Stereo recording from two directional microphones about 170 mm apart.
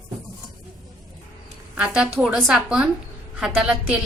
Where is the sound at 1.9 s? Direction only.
5° right (ahead or behind).